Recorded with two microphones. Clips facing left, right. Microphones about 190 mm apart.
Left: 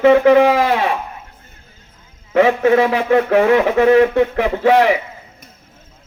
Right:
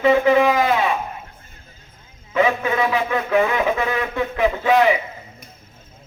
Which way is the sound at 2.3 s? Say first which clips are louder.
Left 7 dB; 70° left (ahead or behind).